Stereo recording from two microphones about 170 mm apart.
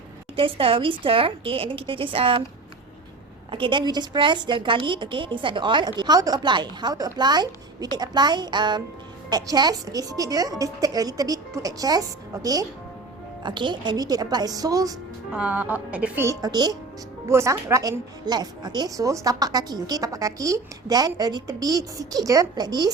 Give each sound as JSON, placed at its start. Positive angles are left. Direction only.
{"t": 0.3, "sound": "a woman's voice", "side_deg": -30}
{"t": 3.5, "sound": "a woman's voice", "side_deg": -30}
{"t": 15.3, "sound": "a woman's voice", "side_deg": -10}